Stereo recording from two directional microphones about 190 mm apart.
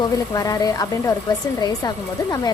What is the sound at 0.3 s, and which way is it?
Speech, 20° left (ahead or behind).